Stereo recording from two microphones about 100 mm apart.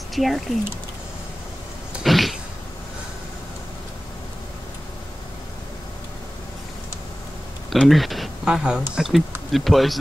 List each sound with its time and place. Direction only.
0.1 s speech: centre (ahead or behind)
2.0 s cat: centre (ahead or behind)
7.7 s speech: centre (ahead or behind)